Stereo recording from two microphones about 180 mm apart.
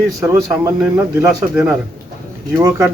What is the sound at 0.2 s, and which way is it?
A man's voice, 15° right (ahead or behind).